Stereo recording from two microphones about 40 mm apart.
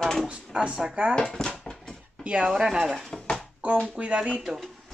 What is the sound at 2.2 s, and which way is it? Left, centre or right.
Speech, right.